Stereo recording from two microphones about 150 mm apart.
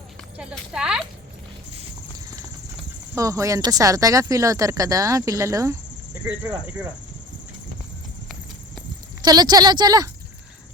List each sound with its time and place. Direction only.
0.3 s speech: 5° right (ahead or behind)
3.2 s speech: 20° right (ahead or behind)
9.2 s speech: 25° right (ahead or behind)